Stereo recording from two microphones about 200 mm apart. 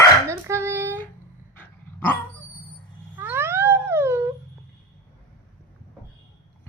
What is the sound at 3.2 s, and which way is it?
Cat, 10° right (ahead or behind).